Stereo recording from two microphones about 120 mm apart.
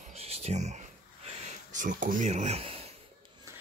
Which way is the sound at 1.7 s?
90° right.